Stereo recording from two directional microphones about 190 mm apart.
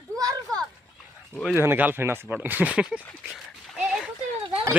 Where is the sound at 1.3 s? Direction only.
5° left (ahead or behind).